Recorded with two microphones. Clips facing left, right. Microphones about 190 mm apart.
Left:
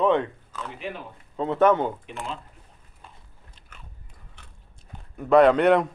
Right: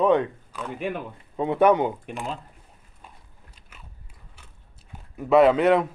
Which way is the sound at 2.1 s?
50° right (ahead or behind).